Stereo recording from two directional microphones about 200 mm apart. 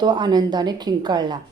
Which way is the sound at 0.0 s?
20° right (ahead or behind).